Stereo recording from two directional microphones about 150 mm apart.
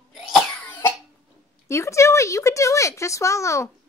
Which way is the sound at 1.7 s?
20° left (ahead or behind).